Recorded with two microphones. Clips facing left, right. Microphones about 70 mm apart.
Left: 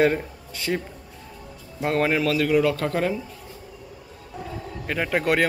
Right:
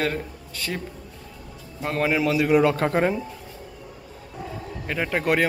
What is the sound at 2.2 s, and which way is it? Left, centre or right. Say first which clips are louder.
Speech: right 1 dB; centre.